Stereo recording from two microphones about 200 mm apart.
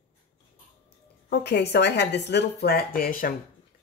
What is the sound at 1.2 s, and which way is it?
A woman's voice, 55° left (ahead or behind).